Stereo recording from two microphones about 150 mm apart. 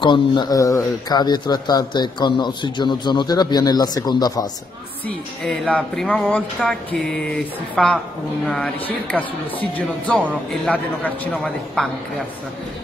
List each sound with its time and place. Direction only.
0.0 s speech: 30° left (ahead or behind)
5.0 s speech: 5° left (ahead or behind)